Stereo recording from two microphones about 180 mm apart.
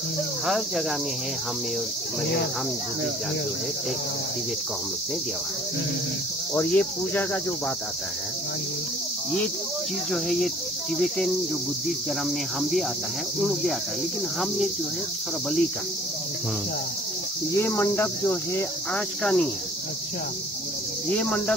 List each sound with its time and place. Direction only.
0.5 s cricket: centre (ahead or behind)
6.5 s cricket: 5° left (ahead or behind)
10.1 s cricket: centre (ahead or behind)
17.6 s cricket: 15° left (ahead or behind)
19.2 s cricket: 5° left (ahead or behind)
21.1 s cricket: 5° left (ahead or behind)